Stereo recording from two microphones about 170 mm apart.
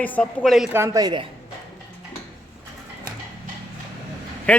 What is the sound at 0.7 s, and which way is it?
Speech, 20° right (ahead or behind).